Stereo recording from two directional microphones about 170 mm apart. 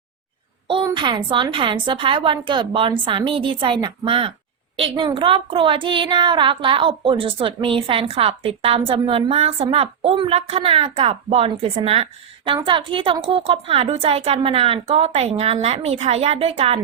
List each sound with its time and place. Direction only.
0.9 s a woman's voice: 25° right (ahead or behind)